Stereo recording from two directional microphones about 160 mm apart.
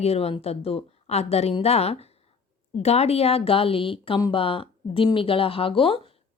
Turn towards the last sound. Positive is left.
turn(degrees=35)  # may be behind; listen again after turning